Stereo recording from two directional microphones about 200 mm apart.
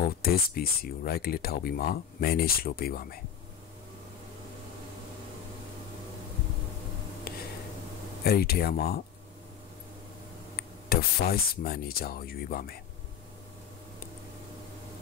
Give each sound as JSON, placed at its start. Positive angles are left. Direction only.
{"t": 0.0, "sound": "speech", "side_deg": 50}
{"t": 7.3, "sound": "a sound", "side_deg": 50}
{"t": 8.2, "sound": "speech", "side_deg": 50}
{"t": 10.5, "sound": "speech", "side_deg": 50}